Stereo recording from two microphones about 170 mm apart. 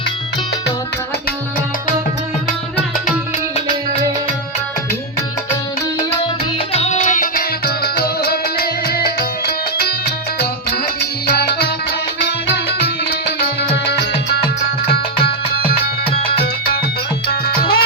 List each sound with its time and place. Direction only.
6.7 s music: 45° left (ahead or behind); by 9.9 s 65° left (ahead or behind)
13.6 s music: 75° left (ahead or behind)
17.4 s music: 65° left (ahead or behind)